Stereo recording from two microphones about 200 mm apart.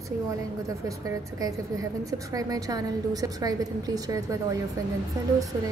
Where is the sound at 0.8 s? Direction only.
15° right (ahead or behind).